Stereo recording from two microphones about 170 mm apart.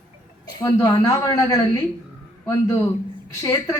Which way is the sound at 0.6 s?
25° left (ahead or behind).